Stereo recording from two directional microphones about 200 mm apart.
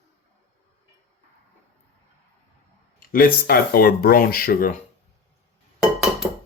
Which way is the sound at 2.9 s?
45° left (ahead or behind).